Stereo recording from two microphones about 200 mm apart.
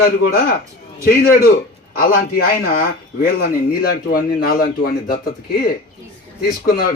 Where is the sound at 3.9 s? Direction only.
45° left (ahead or behind).